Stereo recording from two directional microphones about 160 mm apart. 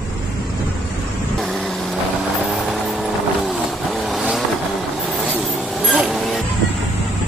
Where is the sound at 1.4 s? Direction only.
Centre (ahead or behind).